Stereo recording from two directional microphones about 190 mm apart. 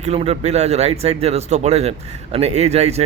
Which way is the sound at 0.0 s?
35° right (ahead or behind).